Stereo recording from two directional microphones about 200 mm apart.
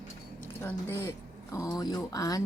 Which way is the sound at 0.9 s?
15° left (ahead or behind).